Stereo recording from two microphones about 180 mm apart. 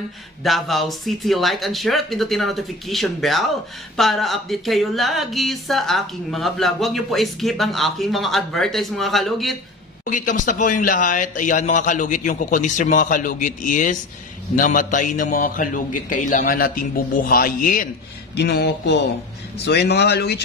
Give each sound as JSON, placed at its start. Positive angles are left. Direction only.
{"t": 0.4, "sound": "speech", "side_deg": 0}
{"t": 10.0, "sound": "a man's voice", "side_deg": 45}
{"t": 18.3, "sound": "speech", "side_deg": 65}